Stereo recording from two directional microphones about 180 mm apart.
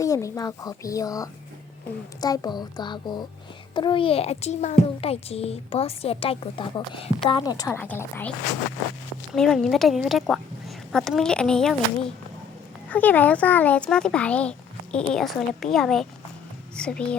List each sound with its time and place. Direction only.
0.0 s a woman's voice: 15° left (ahead or behind)
7.7 s a child's voice: 10° left (ahead or behind)
9.3 s a child's voice: centre (ahead or behind)